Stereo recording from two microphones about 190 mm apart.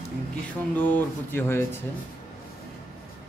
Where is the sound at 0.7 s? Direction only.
10° left (ahead or behind).